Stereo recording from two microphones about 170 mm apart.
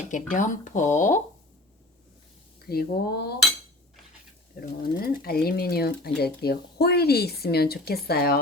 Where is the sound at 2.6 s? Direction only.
65° left (ahead or behind).